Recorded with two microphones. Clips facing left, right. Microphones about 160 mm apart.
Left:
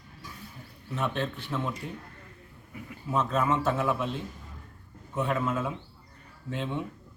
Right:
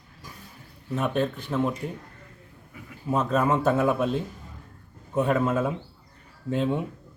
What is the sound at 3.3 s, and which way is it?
Speech, 40° right (ahead or behind).